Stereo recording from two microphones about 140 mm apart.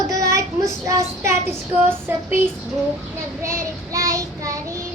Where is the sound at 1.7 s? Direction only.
15° right (ahead or behind).